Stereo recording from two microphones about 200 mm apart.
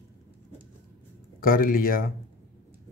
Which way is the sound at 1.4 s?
45° left (ahead or behind).